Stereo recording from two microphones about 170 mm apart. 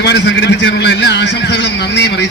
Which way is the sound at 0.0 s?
85° left.